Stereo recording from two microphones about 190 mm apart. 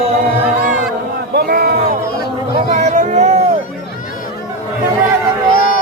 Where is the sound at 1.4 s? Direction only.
55° right (ahead or behind).